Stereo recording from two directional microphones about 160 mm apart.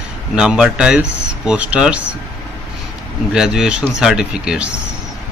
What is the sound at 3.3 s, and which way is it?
Speech, 5° right (ahead or behind).